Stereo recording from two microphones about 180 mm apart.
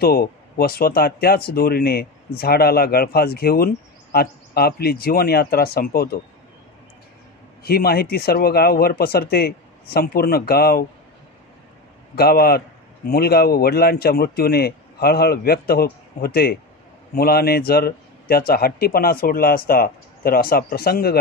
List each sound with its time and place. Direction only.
0.0 s speech: 55° left (ahead or behind)
7.6 s speech: 60° left (ahead or behind)
12.2 s speech: 60° left (ahead or behind)